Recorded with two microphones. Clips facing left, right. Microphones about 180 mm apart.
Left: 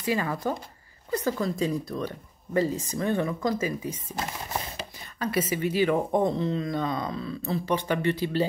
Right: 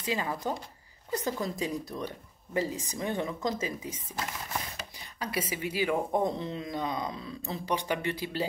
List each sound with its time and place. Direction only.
0.0 s speech: 15° right (ahead or behind)
4.2 s speech: 30° left (ahead or behind)
4.9 s speech: 15° right (ahead or behind)